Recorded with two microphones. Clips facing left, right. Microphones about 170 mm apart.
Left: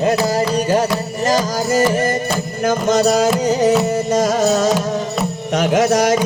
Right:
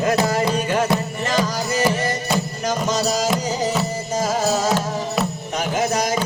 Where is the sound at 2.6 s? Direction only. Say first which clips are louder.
Left 10 dB; 55° left (ahead or behind).